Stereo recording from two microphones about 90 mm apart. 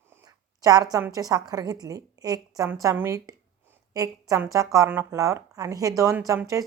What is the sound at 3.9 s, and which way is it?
A woman's voice, 40° right (ahead or behind).